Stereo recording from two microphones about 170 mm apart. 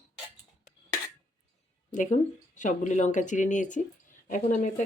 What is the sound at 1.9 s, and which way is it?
Speech, 45° left (ahead or behind).